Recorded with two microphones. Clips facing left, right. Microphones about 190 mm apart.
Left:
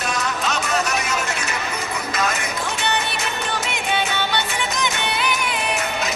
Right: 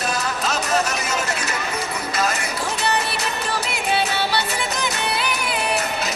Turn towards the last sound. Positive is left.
turn(degrees=-35)  # may be behind; listen again after turning